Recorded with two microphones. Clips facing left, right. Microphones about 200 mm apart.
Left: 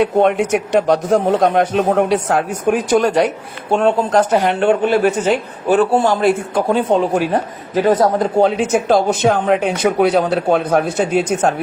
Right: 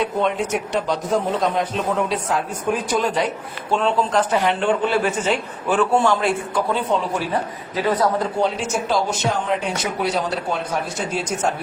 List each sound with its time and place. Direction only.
0.0 s a man's voice: 60° left (ahead or behind)
3.8 s a man's voice: 45° left (ahead or behind)
5.6 s a man's voice: 40° left (ahead or behind); by 11.5 s 55° left (ahead or behind)